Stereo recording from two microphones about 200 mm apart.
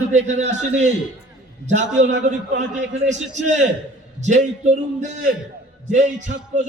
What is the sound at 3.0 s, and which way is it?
A man's voice, 35° right (ahead or behind).